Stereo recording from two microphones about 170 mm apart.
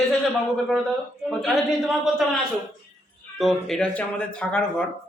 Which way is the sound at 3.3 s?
Centre (ahead or behind).